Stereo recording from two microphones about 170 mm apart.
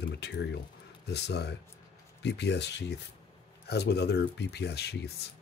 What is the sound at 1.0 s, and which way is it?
Speech, 75° left (ahead or behind).